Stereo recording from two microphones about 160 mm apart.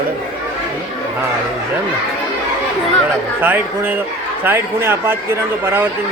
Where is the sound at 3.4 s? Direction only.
10° right (ahead or behind).